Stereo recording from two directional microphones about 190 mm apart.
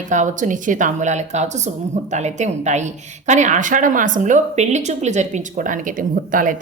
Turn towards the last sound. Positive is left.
turn(degrees=-45)  # may be behind; listen again after turning